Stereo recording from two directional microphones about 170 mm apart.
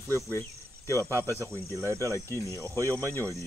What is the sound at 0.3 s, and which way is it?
Cricket, 15° left (ahead or behind).